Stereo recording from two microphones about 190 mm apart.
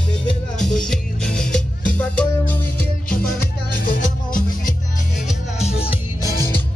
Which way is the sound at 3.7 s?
45° left (ahead or behind).